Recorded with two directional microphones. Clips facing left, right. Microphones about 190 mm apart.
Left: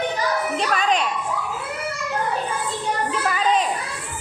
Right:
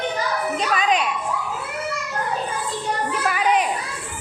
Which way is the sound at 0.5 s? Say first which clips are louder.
Right 3 dB; centre (ahead or behind).